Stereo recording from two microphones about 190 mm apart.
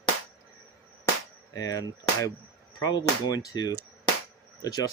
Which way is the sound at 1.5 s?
20° left (ahead or behind).